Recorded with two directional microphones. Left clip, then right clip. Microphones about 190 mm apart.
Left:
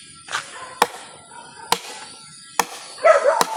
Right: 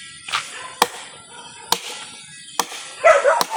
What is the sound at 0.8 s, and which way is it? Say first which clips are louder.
Chop: even; 10° left (ahead or behind).